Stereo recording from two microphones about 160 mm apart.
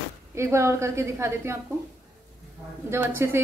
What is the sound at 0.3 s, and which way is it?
A woman's voice, 15° right (ahead or behind).